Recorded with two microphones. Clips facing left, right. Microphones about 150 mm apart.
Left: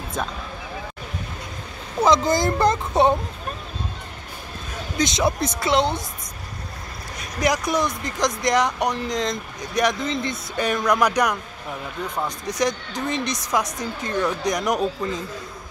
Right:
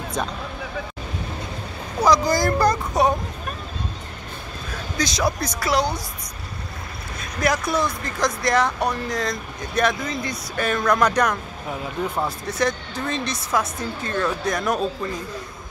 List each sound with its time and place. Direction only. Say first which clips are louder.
2.0 s speech: even; 25° left (ahead or behind)
4.9 s speech: left 2 dB; 25° left (ahead or behind)
7.2 s speech: even; 15° left (ahead or behind)
12.4 s speech: even; 15° left (ahead or behind)